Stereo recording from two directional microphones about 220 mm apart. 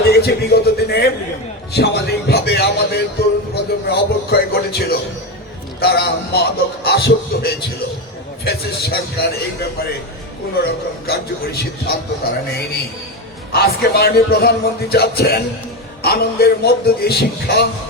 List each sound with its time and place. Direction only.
0.0 s a sound: 45° left (ahead or behind)
5.8 s speech: 45° left (ahead or behind)
13.5 s speech: 45° left (ahead or behind)